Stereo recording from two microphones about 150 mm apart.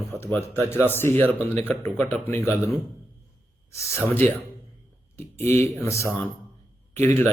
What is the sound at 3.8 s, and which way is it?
Speech, 20° left (ahead or behind).